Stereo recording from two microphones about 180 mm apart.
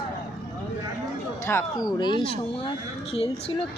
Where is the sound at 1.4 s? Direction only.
20° left (ahead or behind).